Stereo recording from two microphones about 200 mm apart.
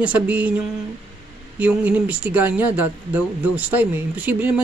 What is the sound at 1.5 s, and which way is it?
Speech, 5° right (ahead or behind).